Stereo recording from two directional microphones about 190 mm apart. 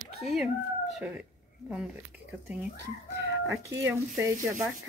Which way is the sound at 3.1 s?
15° right (ahead or behind).